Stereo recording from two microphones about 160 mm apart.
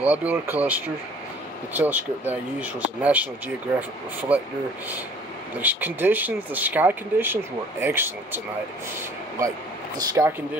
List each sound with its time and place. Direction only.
0.0 s speech: 10° right (ahead or behind)
5.6 s speech: 10° right (ahead or behind)
9.9 s speech: 20° right (ahead or behind)